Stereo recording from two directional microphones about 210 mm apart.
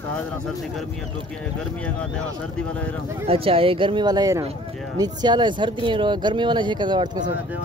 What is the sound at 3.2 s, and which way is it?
Speech, 25° right (ahead or behind).